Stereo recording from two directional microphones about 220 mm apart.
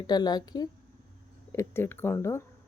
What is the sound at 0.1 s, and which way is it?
Speech, 20° left (ahead or behind).